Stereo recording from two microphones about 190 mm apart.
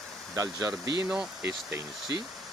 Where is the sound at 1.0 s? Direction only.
5° right (ahead or behind).